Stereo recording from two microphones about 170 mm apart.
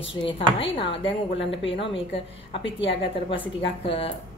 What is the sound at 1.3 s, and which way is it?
Speech, 90° left.